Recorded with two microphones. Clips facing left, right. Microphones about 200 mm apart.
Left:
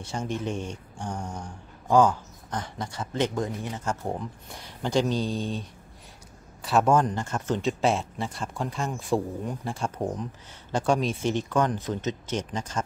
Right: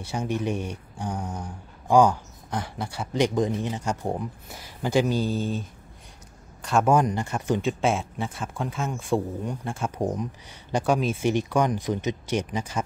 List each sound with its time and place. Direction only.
0.0 s speech: 10° right (ahead or behind)
6.9 s speech: 10° right (ahead or behind)
7.6 s speech: centre (ahead or behind)